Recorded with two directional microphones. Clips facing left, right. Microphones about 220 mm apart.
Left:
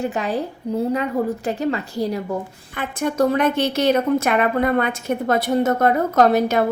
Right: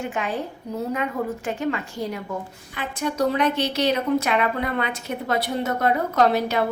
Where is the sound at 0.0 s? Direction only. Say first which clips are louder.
Left 4 dB; 40° left (ahead or behind).